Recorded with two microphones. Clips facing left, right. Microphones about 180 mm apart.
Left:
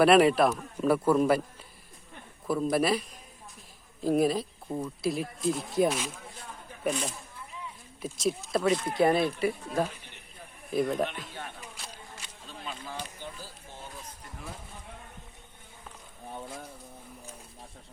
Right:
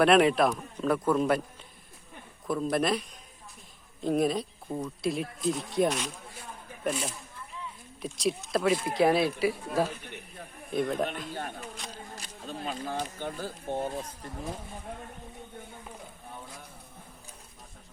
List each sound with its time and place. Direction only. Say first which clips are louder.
0.0 s speech: left 1 dB; centre (ahead or behind)
2.5 s speech: left 1 dB; 5° left (ahead or behind)
11.3 s music: right 5 dB; 45° right (ahead or behind)
12.1 s speech: right 6 dB; 40° right (ahead or behind)